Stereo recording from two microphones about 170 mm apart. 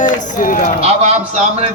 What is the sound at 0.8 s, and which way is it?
Speech, 40° right (ahead or behind).